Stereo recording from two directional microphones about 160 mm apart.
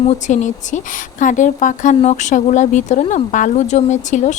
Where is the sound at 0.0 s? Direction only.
45° left (ahead or behind).